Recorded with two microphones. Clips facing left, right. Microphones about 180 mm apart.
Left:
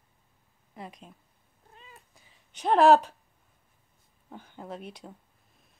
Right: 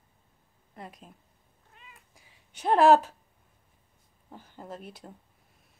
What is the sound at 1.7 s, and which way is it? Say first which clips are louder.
Cat: left 3 dB; 35° left (ahead or behind).